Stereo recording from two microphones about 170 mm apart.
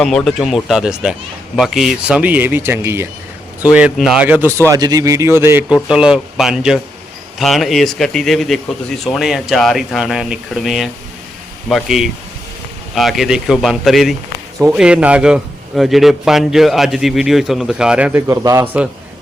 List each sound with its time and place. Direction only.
0.0 s a man's voice: 5° left (ahead or behind)
18.3 s speech: 15° right (ahead or behind)